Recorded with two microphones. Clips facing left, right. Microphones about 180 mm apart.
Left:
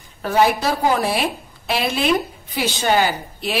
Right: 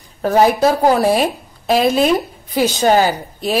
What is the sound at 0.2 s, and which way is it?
A woman's voice, 40° right (ahead or behind).